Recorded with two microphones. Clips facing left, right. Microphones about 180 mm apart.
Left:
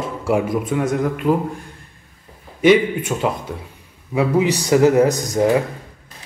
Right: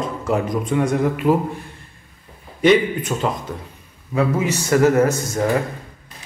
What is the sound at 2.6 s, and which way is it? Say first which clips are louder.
Speech: left 1 dB; 10° left (ahead or behind).